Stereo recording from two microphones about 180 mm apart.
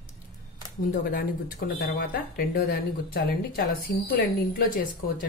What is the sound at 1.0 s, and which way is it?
A woman's voice, 55° left (ahead or behind).